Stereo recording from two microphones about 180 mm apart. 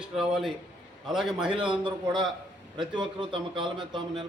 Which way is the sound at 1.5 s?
30° right (ahead or behind).